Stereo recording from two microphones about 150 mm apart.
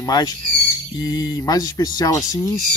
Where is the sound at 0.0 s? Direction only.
25° left (ahead or behind).